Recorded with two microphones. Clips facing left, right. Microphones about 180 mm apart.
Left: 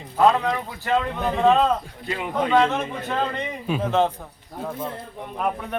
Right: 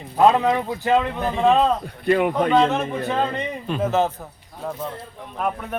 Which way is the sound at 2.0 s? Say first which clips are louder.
Right 7 dB; 55° right (ahead or behind).